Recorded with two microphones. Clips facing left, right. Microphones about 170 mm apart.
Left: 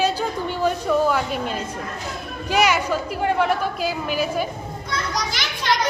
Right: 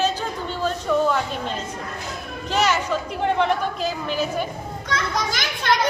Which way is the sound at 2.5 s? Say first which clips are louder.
Left 2 dB; 10° left (ahead or behind).